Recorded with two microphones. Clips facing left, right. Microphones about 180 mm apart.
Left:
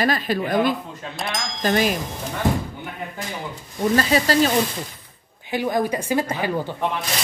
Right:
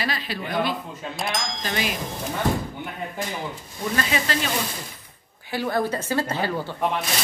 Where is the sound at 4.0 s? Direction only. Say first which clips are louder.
Left 7 dB; 35° left (ahead or behind).